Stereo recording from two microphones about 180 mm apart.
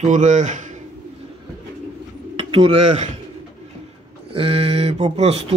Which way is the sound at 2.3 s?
30° right (ahead or behind).